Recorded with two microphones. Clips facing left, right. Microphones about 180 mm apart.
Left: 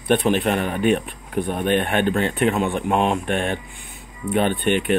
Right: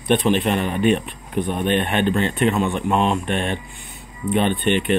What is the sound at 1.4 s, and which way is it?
Speech, 20° right (ahead or behind).